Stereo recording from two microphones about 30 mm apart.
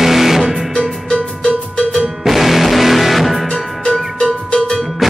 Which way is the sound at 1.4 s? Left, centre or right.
Left.